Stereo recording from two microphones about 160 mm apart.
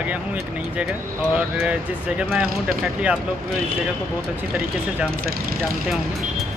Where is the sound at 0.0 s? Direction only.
10° right (ahead or behind).